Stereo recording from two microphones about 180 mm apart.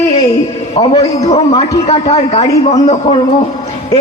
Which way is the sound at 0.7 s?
35° left (ahead or behind).